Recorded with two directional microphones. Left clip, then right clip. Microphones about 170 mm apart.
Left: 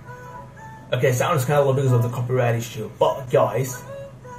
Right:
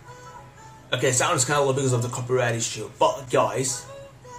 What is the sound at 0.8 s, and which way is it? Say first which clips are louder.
Speech: left 2 dB; 25° right (ahead or behind).